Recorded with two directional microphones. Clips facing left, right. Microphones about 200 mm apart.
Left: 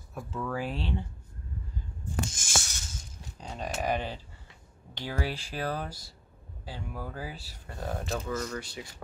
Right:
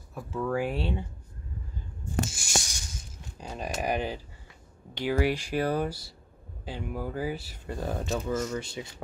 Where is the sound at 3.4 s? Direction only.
10° right (ahead or behind).